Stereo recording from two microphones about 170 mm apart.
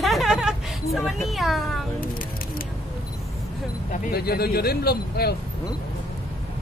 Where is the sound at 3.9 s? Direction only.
65° left (ahead or behind).